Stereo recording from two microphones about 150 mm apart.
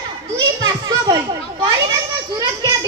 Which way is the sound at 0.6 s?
25° right (ahead or behind).